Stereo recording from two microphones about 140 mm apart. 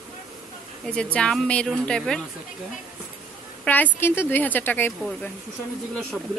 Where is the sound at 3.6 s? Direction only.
10° left (ahead or behind).